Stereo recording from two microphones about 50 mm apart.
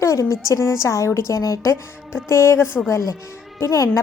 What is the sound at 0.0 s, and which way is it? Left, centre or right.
A woman's voice, left.